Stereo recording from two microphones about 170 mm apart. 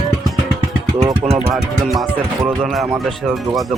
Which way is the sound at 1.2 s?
40° right (ahead or behind).